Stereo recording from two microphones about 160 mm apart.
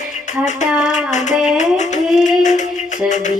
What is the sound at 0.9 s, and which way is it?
Child singing, 50° left (ahead or behind).